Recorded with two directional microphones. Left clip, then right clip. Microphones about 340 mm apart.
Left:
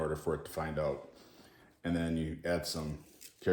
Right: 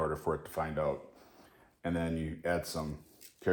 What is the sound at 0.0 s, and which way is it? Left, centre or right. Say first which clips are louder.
Speech: right 2 dB; centre.